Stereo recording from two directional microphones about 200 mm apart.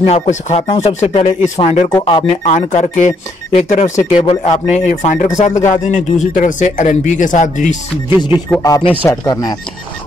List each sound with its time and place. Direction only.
0.0 s speech: 35° left (ahead or behind)
8.5 s speech: 20° left (ahead or behind)